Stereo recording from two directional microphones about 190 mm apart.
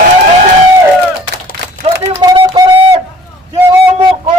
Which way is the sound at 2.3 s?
25° right (ahead or behind).